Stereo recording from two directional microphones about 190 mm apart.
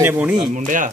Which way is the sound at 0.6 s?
45° right (ahead or behind).